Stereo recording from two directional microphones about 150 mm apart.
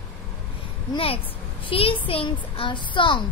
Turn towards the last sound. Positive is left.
turn(degrees=35)  # may be behind; listen again after turning